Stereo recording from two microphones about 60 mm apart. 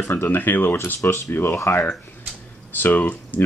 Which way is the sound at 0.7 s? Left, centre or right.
Left.